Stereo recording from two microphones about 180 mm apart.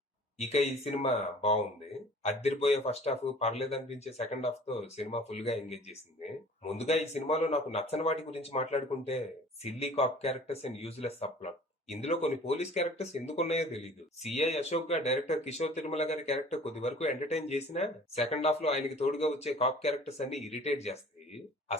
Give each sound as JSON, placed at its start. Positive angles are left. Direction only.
{"t": 0.3, "sound": "speech", "side_deg": 35}